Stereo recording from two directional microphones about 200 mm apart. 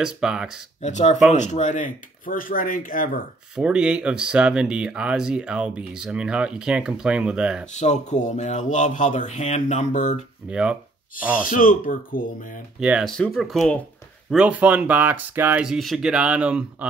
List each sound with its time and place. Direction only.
0.0 s speech: 5° right (ahead or behind)
0.8 s speech: 35° left (ahead or behind)
3.5 s speech: 5° right (ahead or behind)
7.7 s speech: 35° left (ahead or behind)
10.5 s speech: 5° right (ahead or behind)
11.4 s speech: 45° left (ahead or behind)
12.8 s speech: centre (ahead or behind)